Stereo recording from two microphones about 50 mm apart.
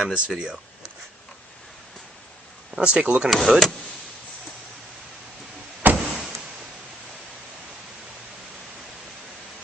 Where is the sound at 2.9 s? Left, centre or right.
Right.